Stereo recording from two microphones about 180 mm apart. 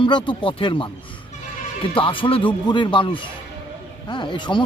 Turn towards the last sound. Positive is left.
turn(degrees=25)  # may be behind; listen again after turning